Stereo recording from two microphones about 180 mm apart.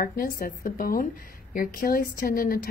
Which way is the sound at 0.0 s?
55° left (ahead or behind).